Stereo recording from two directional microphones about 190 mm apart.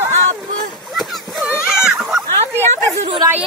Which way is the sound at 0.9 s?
Centre (ahead or behind).